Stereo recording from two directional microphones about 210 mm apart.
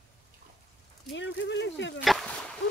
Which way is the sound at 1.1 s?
60° left (ahead or behind).